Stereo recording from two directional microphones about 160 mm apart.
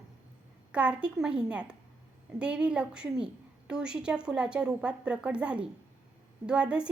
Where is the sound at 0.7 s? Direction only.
5° right (ahead or behind).